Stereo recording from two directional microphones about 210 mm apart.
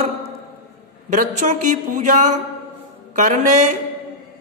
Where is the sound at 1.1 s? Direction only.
35° right (ahead or behind).